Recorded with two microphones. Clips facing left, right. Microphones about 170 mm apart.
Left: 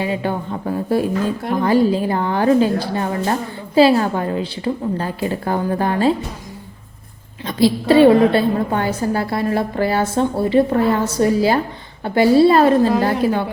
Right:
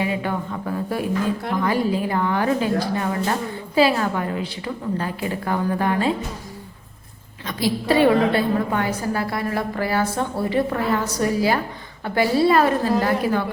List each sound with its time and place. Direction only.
0.0 s a woman's voice: 30° left (ahead or behind)
7.4 s a woman's voice: 30° left (ahead or behind)